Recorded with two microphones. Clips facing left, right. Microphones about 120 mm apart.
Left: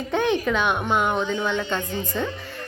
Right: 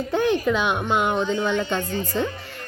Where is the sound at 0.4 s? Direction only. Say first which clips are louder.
Right 1 dB; 10° right (ahead or behind).